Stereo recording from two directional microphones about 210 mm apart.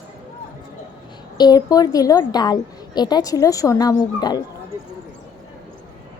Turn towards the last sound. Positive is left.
turn(degrees=20)  # may be behind; listen again after turning